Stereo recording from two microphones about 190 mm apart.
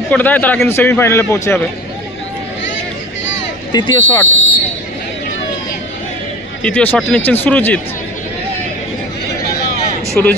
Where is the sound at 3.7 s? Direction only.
25° left (ahead or behind).